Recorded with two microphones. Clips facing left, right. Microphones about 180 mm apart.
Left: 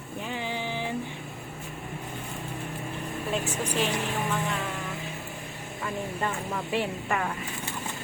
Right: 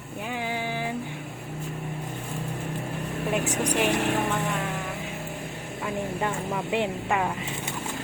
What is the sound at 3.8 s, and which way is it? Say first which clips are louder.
Speech: right 5 dB; 70° right (ahead or behind).